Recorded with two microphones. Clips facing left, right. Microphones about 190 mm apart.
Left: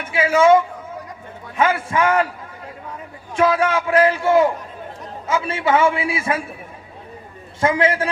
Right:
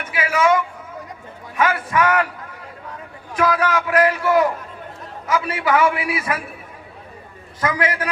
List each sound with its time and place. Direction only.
0.0 s a man's voice: 25° left (ahead or behind)
3.3 s a man's voice: 25° left (ahead or behind)
7.6 s a man's voice: 25° left (ahead or behind)